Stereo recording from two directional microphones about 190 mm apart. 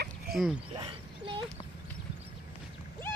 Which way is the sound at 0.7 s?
25° right (ahead or behind).